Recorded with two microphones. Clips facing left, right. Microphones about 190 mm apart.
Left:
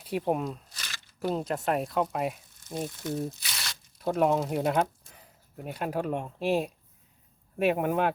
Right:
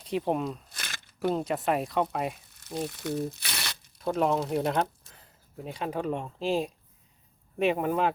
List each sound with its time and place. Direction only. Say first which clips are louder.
0.0 s speech: even; 5° left (ahead or behind)
0.7 s crumpling: right 3 dB; 55° right (ahead or behind)
1.3 s speech: right 1 dB; centre (ahead or behind)
2.6 s speech: right 1 dB; 65° right (ahead or behind)
3.9 s speech: left 1 dB; 5° left (ahead or behind)